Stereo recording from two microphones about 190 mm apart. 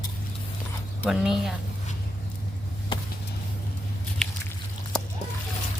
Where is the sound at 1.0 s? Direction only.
Centre (ahead or behind).